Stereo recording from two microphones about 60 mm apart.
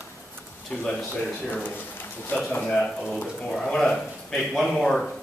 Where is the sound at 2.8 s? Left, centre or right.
Centre.